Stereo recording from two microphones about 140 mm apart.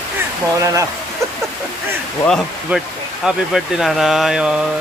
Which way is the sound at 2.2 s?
Centre (ahead or behind).